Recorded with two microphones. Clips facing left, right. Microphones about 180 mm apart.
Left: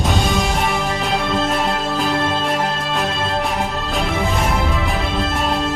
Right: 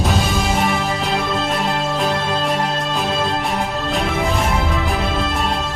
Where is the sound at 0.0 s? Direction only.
Centre (ahead or behind).